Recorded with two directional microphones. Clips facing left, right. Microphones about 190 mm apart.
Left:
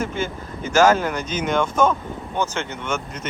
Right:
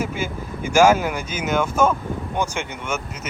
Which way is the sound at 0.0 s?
10° right (ahead or behind).